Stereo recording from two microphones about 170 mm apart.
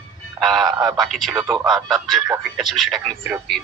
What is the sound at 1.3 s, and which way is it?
Speech, 20° right (ahead or behind).